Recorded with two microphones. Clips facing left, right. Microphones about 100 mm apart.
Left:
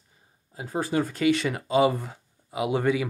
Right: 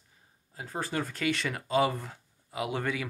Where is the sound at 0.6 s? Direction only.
10° left (ahead or behind).